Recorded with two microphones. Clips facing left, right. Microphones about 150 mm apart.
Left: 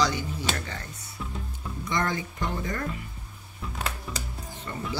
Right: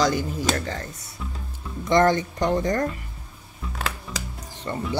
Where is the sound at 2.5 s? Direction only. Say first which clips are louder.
Right 11 dB; 40° right (ahead or behind).